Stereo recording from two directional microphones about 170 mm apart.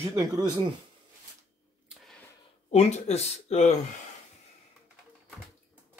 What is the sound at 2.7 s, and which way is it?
Speech, 40° left (ahead or behind).